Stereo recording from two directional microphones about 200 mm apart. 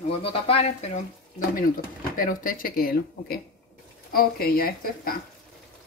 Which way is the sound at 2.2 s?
45° left (ahead or behind).